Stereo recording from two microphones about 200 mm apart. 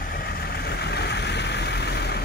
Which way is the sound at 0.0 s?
50° left (ahead or behind).